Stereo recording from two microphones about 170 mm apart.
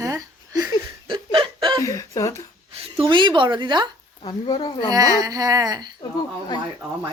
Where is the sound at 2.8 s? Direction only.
30° right (ahead or behind).